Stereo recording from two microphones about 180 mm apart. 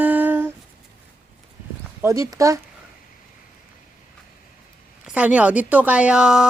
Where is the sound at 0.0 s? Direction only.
10° right (ahead or behind).